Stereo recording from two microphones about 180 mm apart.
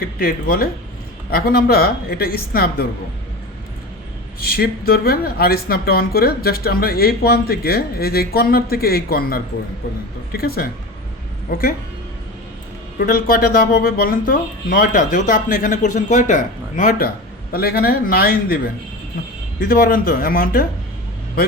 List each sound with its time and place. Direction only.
0.0 s speech: 50° left (ahead or behind)
4.4 s speech: 55° left (ahead or behind)
13.0 s speech: 55° left (ahead or behind)